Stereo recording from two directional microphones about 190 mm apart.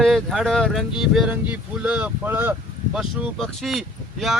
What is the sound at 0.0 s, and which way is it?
Speech, centre (ahead or behind).